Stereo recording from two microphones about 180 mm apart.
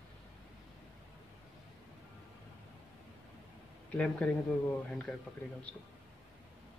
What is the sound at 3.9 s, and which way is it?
Speech, 5° left (ahead or behind).